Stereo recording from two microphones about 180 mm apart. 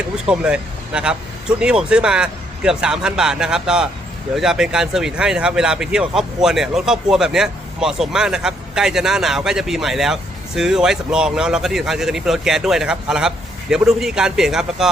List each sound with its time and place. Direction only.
0.3 s speech: 5° right (ahead or behind)